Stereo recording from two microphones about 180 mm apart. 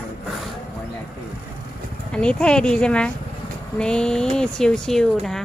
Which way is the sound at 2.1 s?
5° left (ahead or behind).